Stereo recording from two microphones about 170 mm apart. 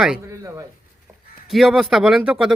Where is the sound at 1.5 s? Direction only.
Centre (ahead or behind).